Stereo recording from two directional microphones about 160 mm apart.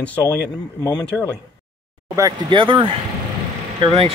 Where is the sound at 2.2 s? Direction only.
25° right (ahead or behind).